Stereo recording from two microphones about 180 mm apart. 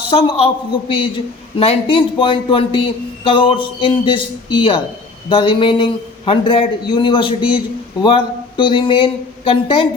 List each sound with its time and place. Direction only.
0.1 s a man's voice: 30° left (ahead or behind)